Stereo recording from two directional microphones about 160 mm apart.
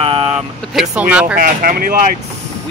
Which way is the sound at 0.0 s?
40° right (ahead or behind).